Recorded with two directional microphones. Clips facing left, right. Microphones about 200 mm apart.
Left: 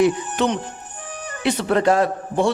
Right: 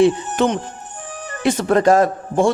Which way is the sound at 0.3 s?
45° right (ahead or behind).